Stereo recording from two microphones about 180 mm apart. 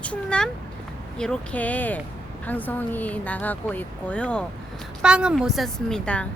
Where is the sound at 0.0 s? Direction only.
5° left (ahead or behind).